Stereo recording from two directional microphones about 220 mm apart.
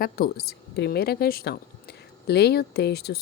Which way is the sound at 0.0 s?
45° left (ahead or behind).